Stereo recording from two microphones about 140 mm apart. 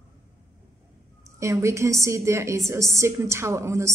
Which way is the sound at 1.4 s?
20° right (ahead or behind).